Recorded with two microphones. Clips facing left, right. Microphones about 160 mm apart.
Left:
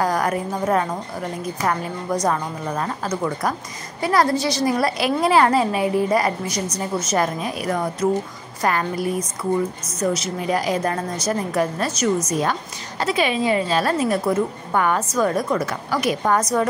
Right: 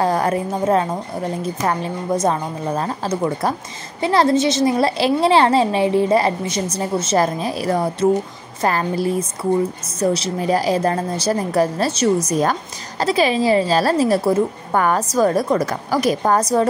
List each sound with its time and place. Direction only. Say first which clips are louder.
0.0 s a woman's voice: right 3 dB; 25° right (ahead or behind)